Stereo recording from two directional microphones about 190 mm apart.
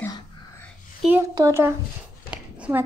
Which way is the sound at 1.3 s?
15° right (ahead or behind).